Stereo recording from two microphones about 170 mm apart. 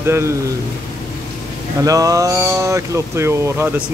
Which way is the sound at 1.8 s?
20° right (ahead or behind).